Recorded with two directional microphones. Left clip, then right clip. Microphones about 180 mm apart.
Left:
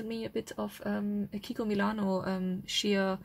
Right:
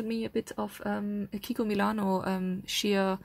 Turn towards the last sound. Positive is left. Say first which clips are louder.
# right 2 dB
turn(degrees=-30)  # may be behind; listen again after turning